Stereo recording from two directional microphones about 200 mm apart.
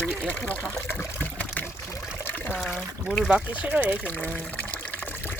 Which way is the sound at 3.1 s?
5° right (ahead or behind).